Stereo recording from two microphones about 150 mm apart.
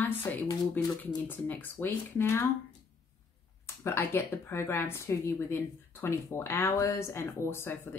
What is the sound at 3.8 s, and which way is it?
Speech, 15° left (ahead or behind).